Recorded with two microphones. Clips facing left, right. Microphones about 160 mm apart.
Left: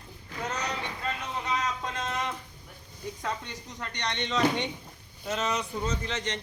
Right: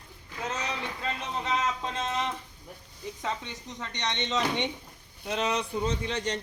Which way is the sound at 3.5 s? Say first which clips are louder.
Even; 20° right (ahead or behind).